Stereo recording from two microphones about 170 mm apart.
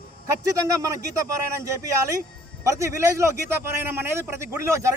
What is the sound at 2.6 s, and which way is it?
Speech, 15° right (ahead or behind).